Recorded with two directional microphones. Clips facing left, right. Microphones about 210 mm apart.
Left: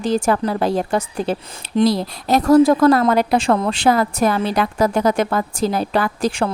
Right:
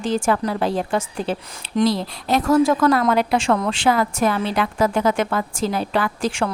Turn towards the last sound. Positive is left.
turn(degrees=35)  # may be behind; listen again after turning